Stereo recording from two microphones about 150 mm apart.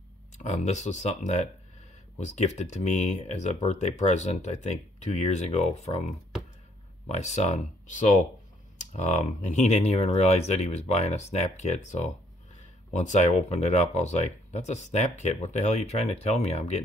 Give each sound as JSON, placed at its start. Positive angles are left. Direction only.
{"t": 0.4, "sound": "speech", "side_deg": 50}